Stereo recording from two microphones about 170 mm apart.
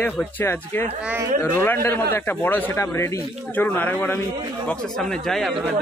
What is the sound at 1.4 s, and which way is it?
Speech, 15° left (ahead or behind).